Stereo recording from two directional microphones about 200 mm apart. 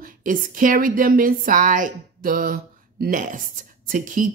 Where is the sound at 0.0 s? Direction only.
45° right (ahead or behind).